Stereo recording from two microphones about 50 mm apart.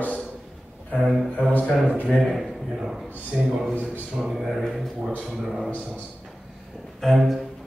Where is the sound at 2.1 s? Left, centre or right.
Centre.